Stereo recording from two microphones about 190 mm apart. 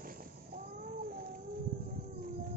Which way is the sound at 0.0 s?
50° right (ahead or behind).